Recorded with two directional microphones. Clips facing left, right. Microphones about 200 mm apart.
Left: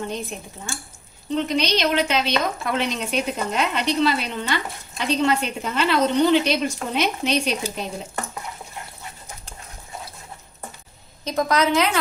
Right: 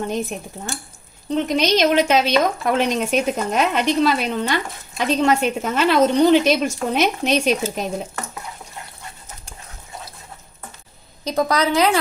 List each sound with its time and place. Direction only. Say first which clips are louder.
0.1 s a woman's voice: right 5 dB; 50° right (ahead or behind)
11.3 s a woman's voice: right 1 dB; 35° right (ahead or behind)